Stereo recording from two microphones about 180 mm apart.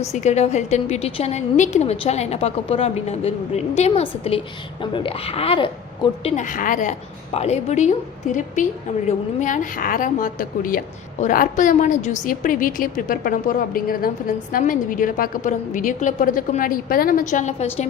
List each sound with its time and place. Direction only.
0.2 s a woman's voice: 40° left (ahead or behind)
6.3 s a woman's voice: 45° left (ahead or behind)